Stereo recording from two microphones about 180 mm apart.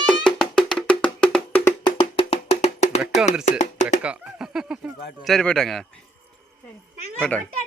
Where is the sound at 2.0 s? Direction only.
30° left (ahead or behind).